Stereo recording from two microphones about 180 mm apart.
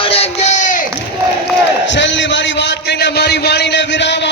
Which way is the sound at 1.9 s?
90° left.